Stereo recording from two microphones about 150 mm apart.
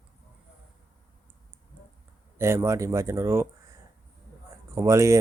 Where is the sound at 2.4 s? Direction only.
15° right (ahead or behind).